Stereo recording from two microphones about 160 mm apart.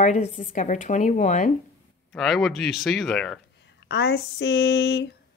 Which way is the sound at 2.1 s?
Centre (ahead or behind).